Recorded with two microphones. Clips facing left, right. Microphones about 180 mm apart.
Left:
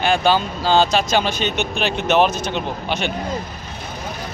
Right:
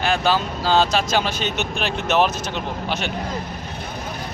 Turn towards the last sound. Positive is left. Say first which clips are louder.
# left 2 dB
turn(degrees=-5)  # may be behind; listen again after turning